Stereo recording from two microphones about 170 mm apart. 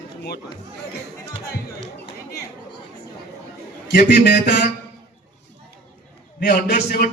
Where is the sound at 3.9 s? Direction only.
70° left (ahead or behind).